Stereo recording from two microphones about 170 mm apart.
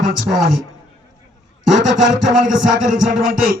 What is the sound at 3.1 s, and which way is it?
Music, 55° right (ahead or behind).